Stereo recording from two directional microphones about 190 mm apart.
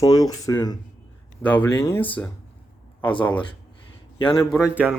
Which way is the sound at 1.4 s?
10° left (ahead or behind).